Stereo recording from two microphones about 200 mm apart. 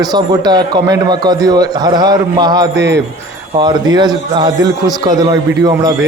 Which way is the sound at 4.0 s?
20° right (ahead or behind).